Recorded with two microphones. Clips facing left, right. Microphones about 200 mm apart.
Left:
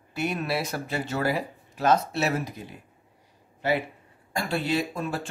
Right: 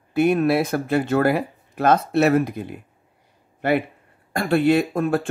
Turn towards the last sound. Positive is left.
turn(degrees=-55)  # may be behind; listen again after turning